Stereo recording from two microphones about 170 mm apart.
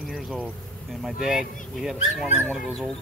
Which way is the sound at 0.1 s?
5° right (ahead or behind).